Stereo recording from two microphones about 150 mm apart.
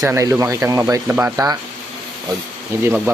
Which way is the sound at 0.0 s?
20° right (ahead or behind).